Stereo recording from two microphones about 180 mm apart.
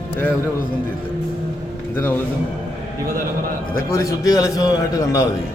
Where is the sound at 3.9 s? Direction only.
20° left (ahead or behind).